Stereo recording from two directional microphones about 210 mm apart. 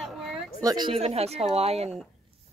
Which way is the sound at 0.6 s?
20° right (ahead or behind).